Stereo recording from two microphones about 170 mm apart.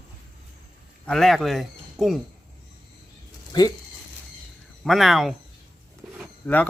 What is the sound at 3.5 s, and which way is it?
Speech, 25° left (ahead or behind).